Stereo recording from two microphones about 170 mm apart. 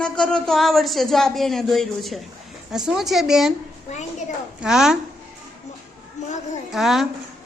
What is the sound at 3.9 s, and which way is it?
Speech, 45° left (ahead or behind).